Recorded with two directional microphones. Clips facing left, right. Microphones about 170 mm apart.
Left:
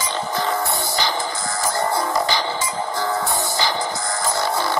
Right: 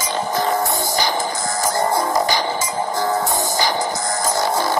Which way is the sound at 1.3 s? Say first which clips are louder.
Right 3 dB; 20° right (ahead or behind).